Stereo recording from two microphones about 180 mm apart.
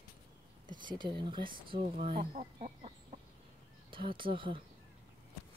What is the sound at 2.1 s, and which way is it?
Chicken, 40° right (ahead or behind).